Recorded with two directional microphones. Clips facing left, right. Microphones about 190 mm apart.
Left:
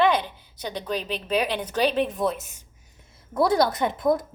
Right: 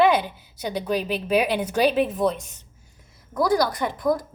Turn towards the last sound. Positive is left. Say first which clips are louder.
# left 1 dB
turn(degrees=20)  # may be behind; listen again after turning